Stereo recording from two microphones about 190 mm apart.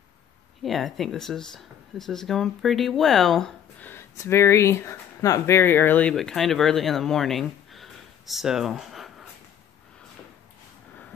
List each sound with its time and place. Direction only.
0.6 s speech: centre (ahead or behind)